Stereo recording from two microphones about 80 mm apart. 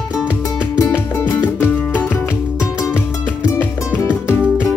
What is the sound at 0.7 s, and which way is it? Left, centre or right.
Music, left.